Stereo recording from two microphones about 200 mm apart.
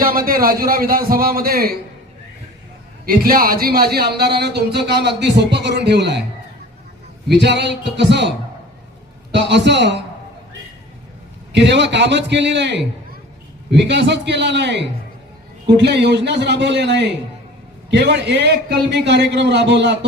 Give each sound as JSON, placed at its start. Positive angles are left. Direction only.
{"t": 0.0, "sound": "a man's voice", "side_deg": -45}
{"t": 3.1, "sound": "a man's voice", "side_deg": -45}
{"t": 7.3, "sound": "a man's voice", "side_deg": -60}
{"t": 9.3, "sound": "a man's voice", "side_deg": -60}
{"t": 11.5, "sound": "a man's voice", "side_deg": -60}